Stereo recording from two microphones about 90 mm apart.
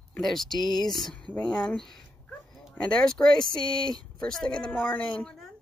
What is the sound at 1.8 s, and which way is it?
Speech, 5° left (ahead or behind).